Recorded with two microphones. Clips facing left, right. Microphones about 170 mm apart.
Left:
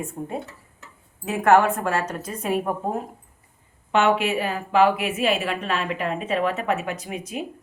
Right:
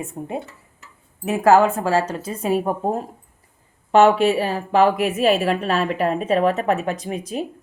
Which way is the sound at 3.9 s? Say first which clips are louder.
Right 6 dB; 35° right (ahead or behind).